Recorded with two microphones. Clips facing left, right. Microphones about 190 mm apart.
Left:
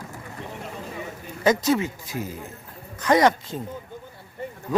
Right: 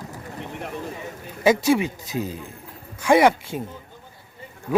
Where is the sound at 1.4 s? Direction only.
10° right (ahead or behind).